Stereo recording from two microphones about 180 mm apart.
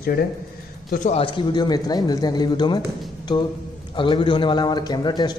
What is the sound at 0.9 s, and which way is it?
Speech, 45° left (ahead or behind).